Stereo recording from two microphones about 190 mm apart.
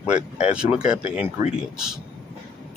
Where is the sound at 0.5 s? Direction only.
5° right (ahead or behind).